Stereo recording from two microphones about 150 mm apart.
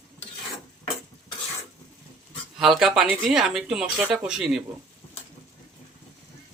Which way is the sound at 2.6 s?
5° right (ahead or behind).